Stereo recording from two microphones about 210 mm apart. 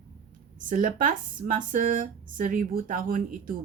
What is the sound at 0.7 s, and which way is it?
Speech, 40° right (ahead or behind).